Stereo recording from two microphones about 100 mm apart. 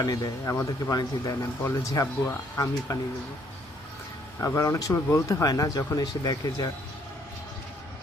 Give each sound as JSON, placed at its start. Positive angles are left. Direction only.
{"t": 0.0, "sound": "speech", "side_deg": 40}
{"t": 4.4, "sound": "speech", "side_deg": 30}